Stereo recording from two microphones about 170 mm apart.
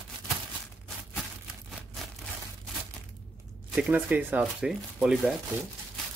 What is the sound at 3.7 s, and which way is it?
Speech, 10° right (ahead or behind).